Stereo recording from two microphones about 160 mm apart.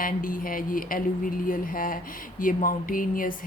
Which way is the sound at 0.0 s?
60° left (ahead or behind).